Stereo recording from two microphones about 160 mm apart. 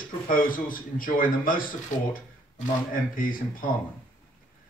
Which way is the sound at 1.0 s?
60° left (ahead or behind).